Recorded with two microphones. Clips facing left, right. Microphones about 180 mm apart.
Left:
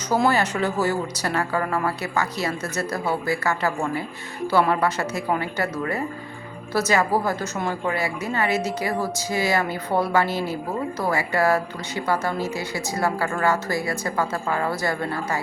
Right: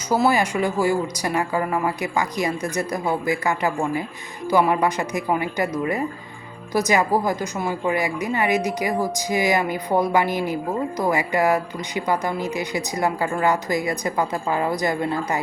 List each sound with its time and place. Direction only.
0.1 s speech: 10° right (ahead or behind)
6.7 s speech: 15° right (ahead or behind)